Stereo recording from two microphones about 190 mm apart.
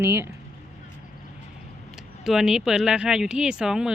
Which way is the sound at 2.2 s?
Centre (ahead or behind).